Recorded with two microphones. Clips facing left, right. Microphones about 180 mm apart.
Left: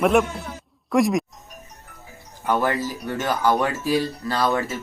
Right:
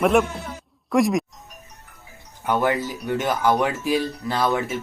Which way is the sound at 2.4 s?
15° right (ahead or behind).